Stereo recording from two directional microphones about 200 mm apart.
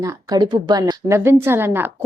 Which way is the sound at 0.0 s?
15° right (ahead or behind).